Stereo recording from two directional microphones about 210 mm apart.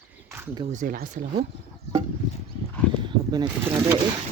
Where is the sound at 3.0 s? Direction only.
20° right (ahead or behind).